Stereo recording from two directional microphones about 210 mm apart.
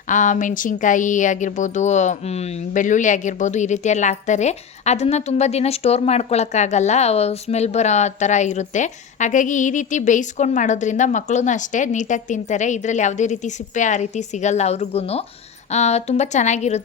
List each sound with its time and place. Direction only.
0.1 s speech: 35° left (ahead or behind)